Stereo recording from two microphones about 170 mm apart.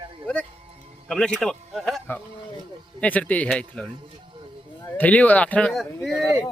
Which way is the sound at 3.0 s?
10° left (ahead or behind).